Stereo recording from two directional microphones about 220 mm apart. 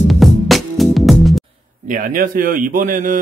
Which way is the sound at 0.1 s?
Centre (ahead or behind).